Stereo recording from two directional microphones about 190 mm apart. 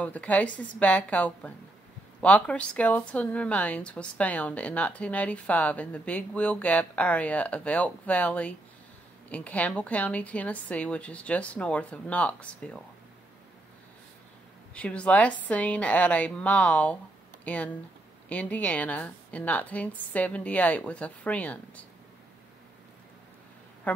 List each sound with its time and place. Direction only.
0.0 s speech: 5° left (ahead or behind)
14.7 s speech: 5° left (ahead or behind)